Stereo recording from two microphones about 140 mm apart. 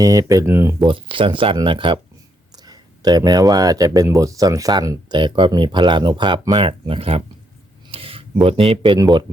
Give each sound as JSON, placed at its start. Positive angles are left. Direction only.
{"t": 0.0, "sound": "speech", "side_deg": -25}
{"t": 0.9, "sound": "speech", "side_deg": -40}
{"t": 6.7, "sound": "speech", "side_deg": -40}
{"t": 7.9, "sound": "a sound", "side_deg": -45}
{"t": 9.0, "sound": "speech", "side_deg": -30}